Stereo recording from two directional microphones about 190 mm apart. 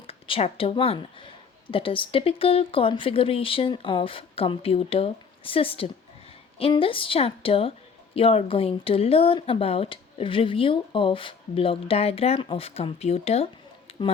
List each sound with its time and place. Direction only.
0.1 s speech: 30° left (ahead or behind)